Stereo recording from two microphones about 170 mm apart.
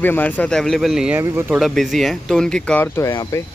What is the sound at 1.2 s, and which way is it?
Speech, 15° right (ahead or behind).